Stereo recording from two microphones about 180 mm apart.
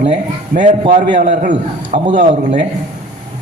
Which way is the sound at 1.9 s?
60° right (ahead or behind).